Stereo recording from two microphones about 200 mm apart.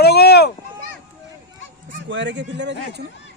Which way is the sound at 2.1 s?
65° right (ahead or behind).